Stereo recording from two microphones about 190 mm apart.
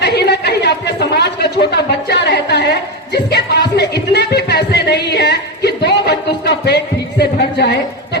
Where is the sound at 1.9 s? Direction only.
60° left (ahead or behind).